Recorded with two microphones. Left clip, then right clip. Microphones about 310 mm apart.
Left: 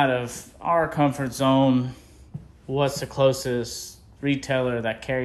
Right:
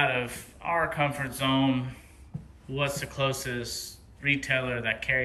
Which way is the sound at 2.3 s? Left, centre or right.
Centre.